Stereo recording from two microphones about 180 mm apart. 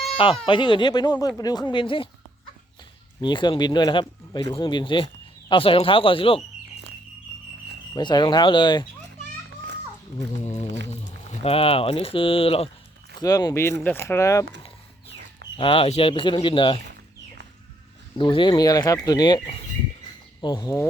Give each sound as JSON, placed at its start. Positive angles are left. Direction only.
{"t": 0.4, "sound": "speech", "side_deg": 25}
{"t": 3.2, "sound": "speech", "side_deg": 25}
{"t": 7.9, "sound": "speech", "side_deg": 25}
{"t": 10.4, "sound": "speech", "side_deg": 40}
{"t": 15.5, "sound": "speech", "side_deg": 30}
{"t": 18.2, "sound": "speech", "side_deg": 25}